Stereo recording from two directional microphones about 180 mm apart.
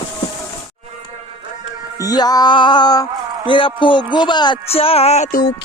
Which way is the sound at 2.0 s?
20° left (ahead or behind).